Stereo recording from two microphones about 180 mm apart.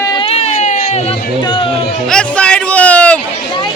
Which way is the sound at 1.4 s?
25° left (ahead or behind).